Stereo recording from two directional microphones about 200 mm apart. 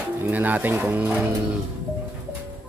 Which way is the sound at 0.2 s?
10° right (ahead or behind).